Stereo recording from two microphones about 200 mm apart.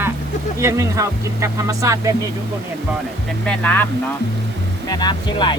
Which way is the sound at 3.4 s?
5° left (ahead or behind).